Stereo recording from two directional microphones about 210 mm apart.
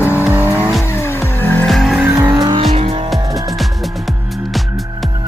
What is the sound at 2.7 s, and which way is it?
Music, 25° right (ahead or behind).